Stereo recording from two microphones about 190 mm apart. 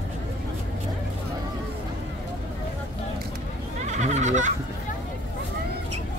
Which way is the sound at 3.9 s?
40° right (ahead or behind).